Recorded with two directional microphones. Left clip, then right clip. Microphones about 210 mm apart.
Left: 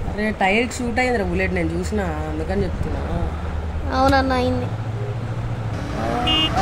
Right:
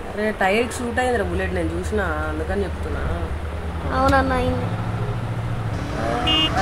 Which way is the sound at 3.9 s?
5° left (ahead or behind).